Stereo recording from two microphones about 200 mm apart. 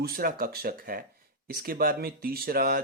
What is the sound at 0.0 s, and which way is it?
A man's voice, 50° right (ahead or behind).